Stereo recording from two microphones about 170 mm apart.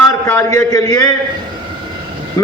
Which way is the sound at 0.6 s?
20° left (ahead or behind).